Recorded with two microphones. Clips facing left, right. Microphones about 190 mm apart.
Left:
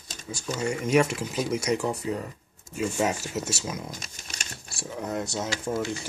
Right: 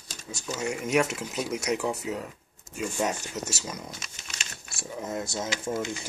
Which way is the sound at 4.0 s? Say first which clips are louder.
Left 2 dB; 35° left (ahead or behind).